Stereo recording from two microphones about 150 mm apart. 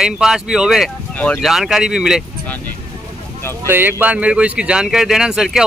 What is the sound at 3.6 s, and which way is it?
Speech, 15° right (ahead or behind).